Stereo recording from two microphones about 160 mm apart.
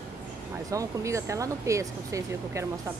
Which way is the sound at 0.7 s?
20° right (ahead or behind).